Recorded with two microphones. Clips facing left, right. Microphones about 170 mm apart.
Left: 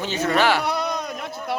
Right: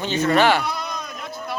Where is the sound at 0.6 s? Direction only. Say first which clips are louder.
Left 4 dB; 70° left (ahead or behind).